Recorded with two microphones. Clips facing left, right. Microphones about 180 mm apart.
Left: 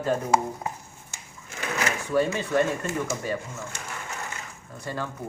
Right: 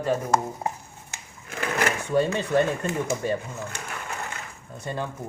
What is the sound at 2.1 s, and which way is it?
Speech, 25° right (ahead or behind).